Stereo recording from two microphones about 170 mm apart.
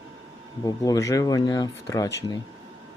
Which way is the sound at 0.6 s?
20° left (ahead or behind).